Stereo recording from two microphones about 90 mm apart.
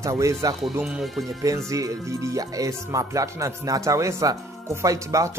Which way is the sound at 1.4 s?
35° right (ahead or behind).